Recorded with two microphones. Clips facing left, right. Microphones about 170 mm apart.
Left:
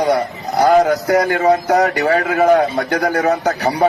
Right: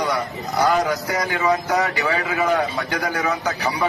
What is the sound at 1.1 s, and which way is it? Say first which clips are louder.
Speech: left 8 dB; 60° left (ahead or behind).